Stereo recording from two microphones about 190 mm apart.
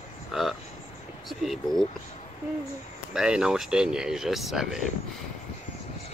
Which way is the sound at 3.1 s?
5° right (ahead or behind).